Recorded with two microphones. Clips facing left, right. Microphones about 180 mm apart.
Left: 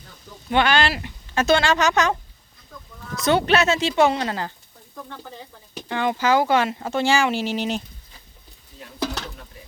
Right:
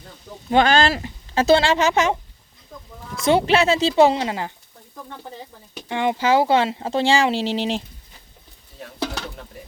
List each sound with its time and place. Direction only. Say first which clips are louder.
0.5 s speech: right 3 dB; 40° right (ahead or behind)
3.2 s speech: right 2 dB; 25° right (ahead or behind)
5.9 s speech: right 1 dB; 20° right (ahead or behind)